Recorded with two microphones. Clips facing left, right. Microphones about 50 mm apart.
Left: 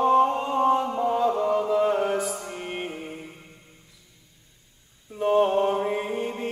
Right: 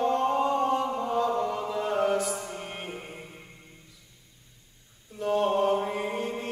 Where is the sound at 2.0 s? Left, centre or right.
Left.